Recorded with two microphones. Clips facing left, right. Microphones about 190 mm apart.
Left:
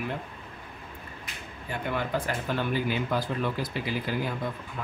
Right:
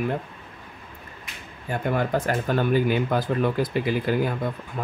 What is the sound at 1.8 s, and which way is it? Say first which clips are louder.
Speech: right 6 dB; 45° right (ahead or behind).